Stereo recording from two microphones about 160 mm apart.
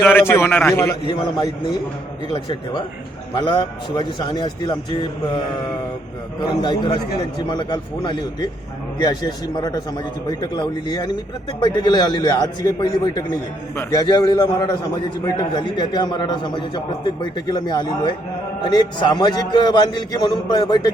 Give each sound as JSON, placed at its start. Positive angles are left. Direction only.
{"t": 0.0, "sound": "a man's voice", "side_deg": 10}
{"t": 1.0, "sound": "a man's voice", "side_deg": 30}